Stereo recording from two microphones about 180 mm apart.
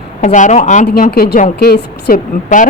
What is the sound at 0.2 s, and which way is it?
Speech, 45° left (ahead or behind).